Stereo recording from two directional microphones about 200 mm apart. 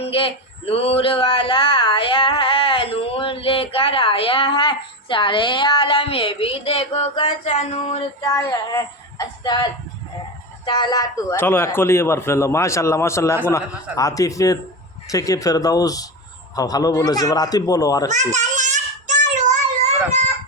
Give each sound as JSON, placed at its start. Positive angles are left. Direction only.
{"t": 0.0, "sound": "a sound", "side_deg": 25}
{"t": 8.2, "sound": "speech", "side_deg": 15}
{"t": 10.7, "sound": "speech", "side_deg": 20}
{"t": 18.1, "sound": "child singing", "side_deg": -35}